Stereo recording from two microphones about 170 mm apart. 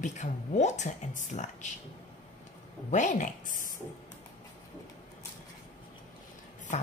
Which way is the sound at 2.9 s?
45° left (ahead or behind).